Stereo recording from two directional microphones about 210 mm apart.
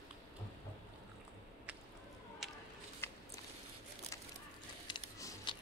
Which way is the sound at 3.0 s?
10° left (ahead or behind).